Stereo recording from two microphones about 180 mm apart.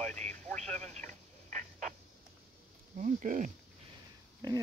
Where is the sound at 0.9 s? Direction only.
45° right (ahead or behind).